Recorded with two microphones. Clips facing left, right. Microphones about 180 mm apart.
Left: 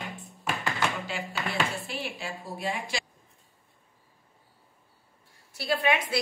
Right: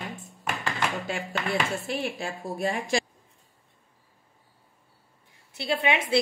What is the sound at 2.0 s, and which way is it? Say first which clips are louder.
Speech: right 5 dB; 50° right (ahead or behind).